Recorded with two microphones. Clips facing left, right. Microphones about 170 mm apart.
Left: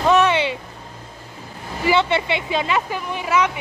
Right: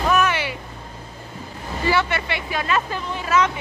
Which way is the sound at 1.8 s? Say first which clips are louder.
Left 3 dB; 20° left (ahead or behind).